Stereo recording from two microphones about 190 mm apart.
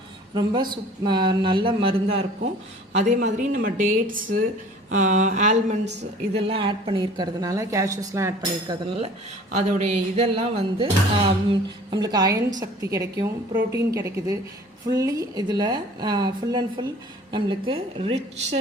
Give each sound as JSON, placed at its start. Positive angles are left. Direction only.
{"t": 0.3, "sound": "speech", "side_deg": -25}
{"t": 4.9, "sound": "a sound", "side_deg": -40}
{"t": 5.8, "sound": "a woman's voice", "side_deg": -65}
{"t": 6.3, "sound": "speech", "side_deg": -30}
{"t": 9.5, "sound": "speech", "side_deg": -40}